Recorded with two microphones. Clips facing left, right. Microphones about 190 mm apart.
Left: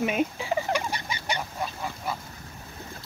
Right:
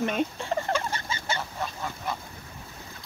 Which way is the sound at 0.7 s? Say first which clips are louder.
Even; 15° left (ahead or behind).